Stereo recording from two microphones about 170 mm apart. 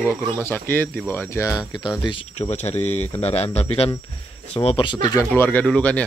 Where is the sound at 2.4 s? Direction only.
40° left (ahead or behind).